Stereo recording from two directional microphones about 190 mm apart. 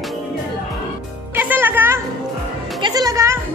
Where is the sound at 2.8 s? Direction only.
20° right (ahead or behind).